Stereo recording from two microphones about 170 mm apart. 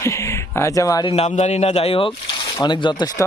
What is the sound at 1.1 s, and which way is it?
Speech, 40° left (ahead or behind).